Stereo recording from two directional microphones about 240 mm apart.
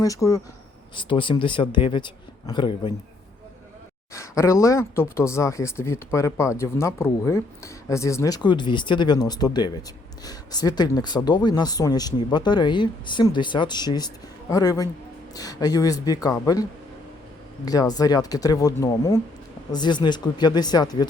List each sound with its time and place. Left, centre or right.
0.0 s speech: centre
4.1 s speech: centre
17.7 s speech: centre